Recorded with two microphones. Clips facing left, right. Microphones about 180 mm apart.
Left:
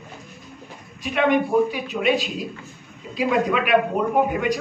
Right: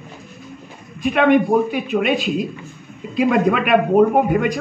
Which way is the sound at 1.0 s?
55° right (ahead or behind).